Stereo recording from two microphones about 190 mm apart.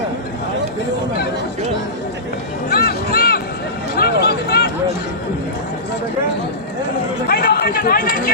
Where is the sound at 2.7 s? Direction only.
55° left (ahead or behind).